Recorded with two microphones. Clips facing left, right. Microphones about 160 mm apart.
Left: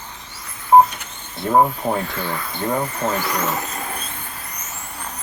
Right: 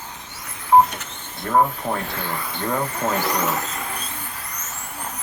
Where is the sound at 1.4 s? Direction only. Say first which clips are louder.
Left 3 dB; 25° left (ahead or behind).